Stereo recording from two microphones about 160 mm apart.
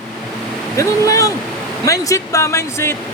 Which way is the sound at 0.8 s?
20° left (ahead or behind).